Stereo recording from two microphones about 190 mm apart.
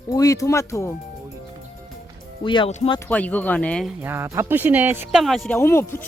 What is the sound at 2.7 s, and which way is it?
Speech, 35° left (ahead or behind).